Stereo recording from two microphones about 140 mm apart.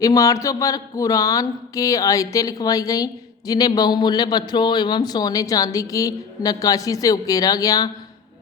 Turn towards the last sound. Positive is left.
turn(degrees=25)  # may be behind; listen again after turning